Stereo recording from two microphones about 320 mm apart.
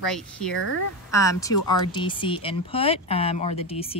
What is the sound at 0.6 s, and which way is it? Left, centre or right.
Speech, left.